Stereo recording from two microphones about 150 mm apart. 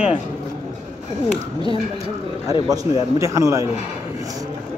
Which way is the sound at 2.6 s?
25° right (ahead or behind).